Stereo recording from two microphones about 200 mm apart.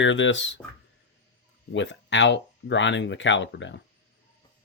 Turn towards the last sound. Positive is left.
turn(degrees=65)  # may be behind; listen again after turning